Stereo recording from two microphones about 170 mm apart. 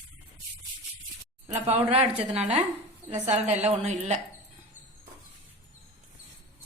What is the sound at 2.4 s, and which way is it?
Speech, 5° right (ahead or behind).